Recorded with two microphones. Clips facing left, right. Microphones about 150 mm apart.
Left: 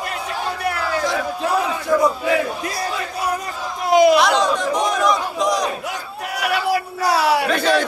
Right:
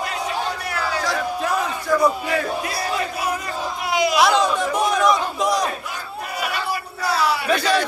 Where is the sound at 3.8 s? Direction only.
45° left (ahead or behind).